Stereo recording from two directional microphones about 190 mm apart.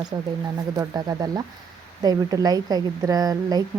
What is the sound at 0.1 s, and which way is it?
Speech, 20° right (ahead or behind).